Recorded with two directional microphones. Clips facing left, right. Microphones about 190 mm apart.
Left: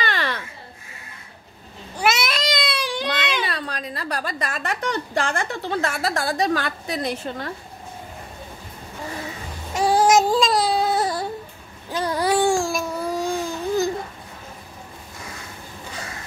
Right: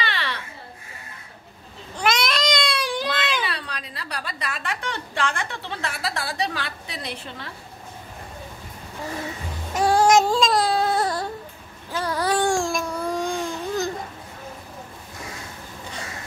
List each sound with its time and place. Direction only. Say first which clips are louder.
0.0 s babbling: left 4 dB; 45° left (ahead or behind)
2.0 s baby cry: left 1 dB; 5° left (ahead or behind)
3.4 s a woman's voice: left 4 dB; 45° left (ahead or behind)
9.8 s child singing: even; 5° left (ahead or behind)
11.9 s babbling: left 2 dB; 15° left (ahead or behind)